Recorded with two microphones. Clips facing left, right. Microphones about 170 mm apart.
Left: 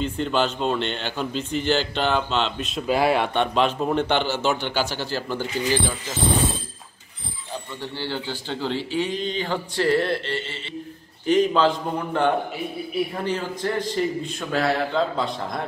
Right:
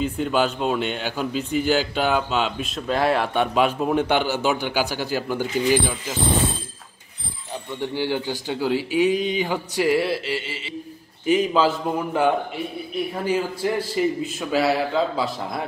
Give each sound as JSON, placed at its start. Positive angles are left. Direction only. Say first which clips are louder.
{"t": 0.0, "sound": "speech", "louder": "right 1 dB", "side_deg": -5}
{"t": 7.8, "sound": "a man's voice", "louder": "right 7 dB", "side_deg": -15}